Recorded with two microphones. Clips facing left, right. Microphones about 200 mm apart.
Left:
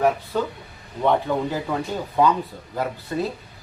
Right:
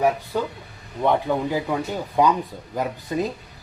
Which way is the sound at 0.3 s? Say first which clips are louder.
Left 1 dB; 15° right (ahead or behind).